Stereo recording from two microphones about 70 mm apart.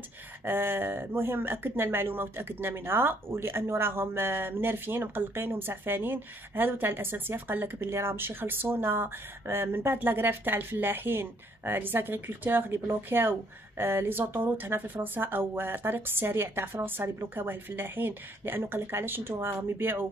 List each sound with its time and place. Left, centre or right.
0.5 s speech: right